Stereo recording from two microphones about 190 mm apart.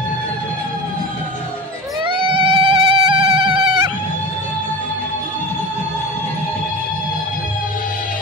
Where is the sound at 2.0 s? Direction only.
25° right (ahead or behind).